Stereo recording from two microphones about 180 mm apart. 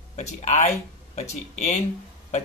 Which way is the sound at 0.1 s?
40° left (ahead or behind).